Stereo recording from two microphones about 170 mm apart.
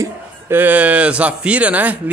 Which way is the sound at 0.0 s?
10° right (ahead or behind).